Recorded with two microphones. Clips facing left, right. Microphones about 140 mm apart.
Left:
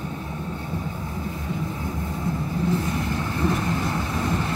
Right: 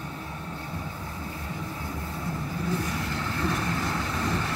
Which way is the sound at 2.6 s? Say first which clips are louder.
Left 5 dB; 25° left (ahead or behind).